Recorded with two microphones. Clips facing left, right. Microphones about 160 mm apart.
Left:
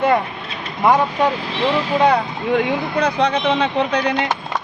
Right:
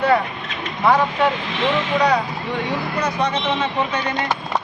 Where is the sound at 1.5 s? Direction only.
35° left (ahead or behind).